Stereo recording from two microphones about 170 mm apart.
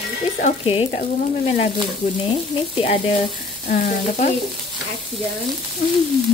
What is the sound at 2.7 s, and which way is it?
Stir, 35° left (ahead or behind).